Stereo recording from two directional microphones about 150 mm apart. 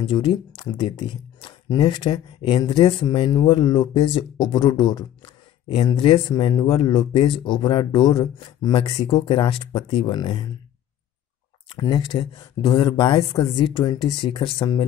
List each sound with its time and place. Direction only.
0.0 s speech: 35° left (ahead or behind)
11.9 s speech: 35° left (ahead or behind)